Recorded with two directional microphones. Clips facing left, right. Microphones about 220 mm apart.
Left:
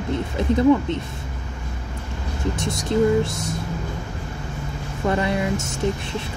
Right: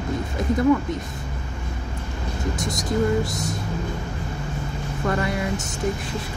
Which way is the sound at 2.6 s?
30° left (ahead or behind).